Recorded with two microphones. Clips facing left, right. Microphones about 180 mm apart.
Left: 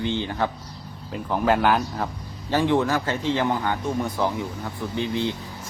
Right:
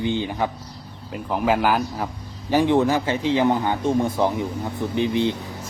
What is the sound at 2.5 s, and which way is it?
Speech, 15° right (ahead or behind).